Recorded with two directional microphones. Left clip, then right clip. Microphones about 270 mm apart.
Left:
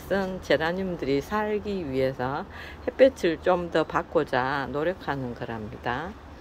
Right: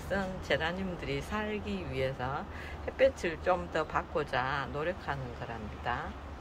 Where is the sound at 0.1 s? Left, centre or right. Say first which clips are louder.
Left 8 dB; left.